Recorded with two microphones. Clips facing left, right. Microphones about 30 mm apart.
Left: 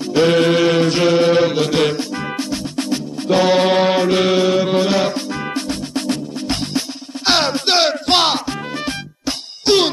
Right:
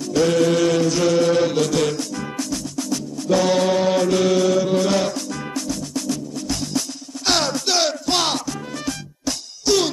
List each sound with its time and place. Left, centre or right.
0.1 s chant: left
5.7 s music: left